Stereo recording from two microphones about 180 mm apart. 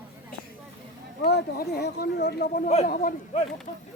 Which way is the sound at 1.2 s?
65° left (ahead or behind).